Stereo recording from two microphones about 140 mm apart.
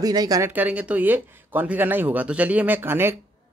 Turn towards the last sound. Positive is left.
turn(degrees=-15)  # may be behind; listen again after turning